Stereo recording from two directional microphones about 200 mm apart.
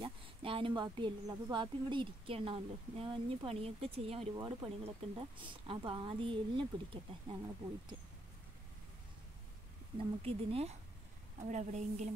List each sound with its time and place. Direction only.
0.0 s speech: 25° right (ahead or behind)
4.4 s speech: 20° right (ahead or behind)
10.2 s a woman's voice: 30° right (ahead or behind)